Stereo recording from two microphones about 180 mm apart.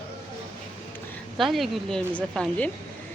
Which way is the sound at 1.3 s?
Centre (ahead or behind).